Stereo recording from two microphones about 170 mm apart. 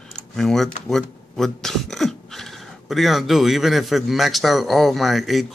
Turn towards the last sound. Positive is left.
turn(degrees=0)  # may be behind; listen again after turning